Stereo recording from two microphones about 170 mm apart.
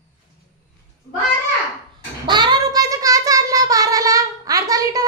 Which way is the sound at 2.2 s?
25° right (ahead or behind).